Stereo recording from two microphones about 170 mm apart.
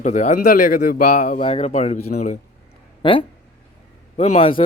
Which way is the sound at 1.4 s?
35° left (ahead or behind).